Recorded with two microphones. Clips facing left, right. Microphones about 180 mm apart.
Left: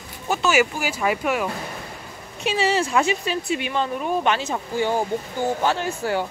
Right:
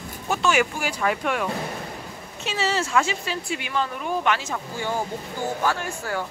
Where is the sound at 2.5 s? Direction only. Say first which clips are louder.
Left 4 dB; 15° left (ahead or behind).